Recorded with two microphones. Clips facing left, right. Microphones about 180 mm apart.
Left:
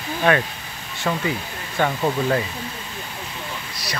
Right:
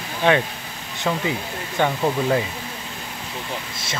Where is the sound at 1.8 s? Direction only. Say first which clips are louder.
Even; 5° right (ahead or behind).